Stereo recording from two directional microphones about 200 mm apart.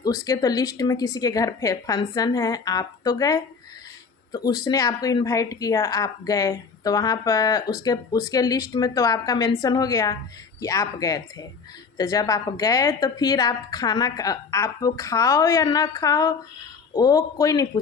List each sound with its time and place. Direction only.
0.3 s a woman's voice: 15° left (ahead or behind)